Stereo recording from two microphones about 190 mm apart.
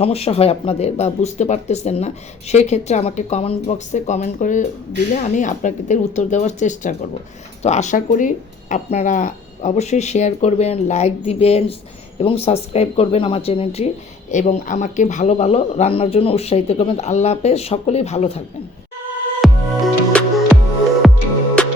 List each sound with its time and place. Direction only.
0.0 s speech: 30° left (ahead or behind)
19.4 s music: centre (ahead or behind)
21.6 s music: 5° left (ahead or behind)